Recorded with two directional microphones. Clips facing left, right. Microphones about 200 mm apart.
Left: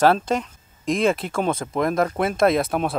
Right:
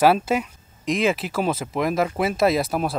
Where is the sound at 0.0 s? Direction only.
5° right (ahead or behind).